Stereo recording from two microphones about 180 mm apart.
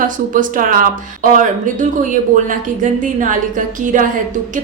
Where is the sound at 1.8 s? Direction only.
45° right (ahead or behind).